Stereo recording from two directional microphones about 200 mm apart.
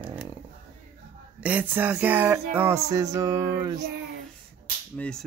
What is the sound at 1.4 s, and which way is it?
Music, 10° right (ahead or behind).